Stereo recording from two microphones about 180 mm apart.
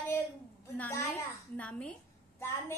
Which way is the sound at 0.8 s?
15° left (ahead or behind).